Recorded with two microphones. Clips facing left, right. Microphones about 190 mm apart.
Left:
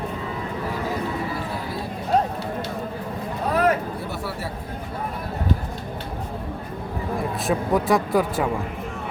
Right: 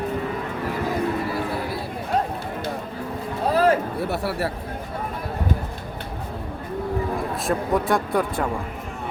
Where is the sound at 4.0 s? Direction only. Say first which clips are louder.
Right 5 dB; 65° right (ahead or behind).